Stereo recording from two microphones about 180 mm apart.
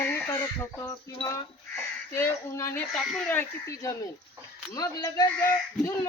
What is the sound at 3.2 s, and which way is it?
Speech, 15° left (ahead or behind).